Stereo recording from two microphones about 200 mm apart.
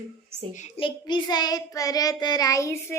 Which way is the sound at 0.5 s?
30° left (ahead or behind).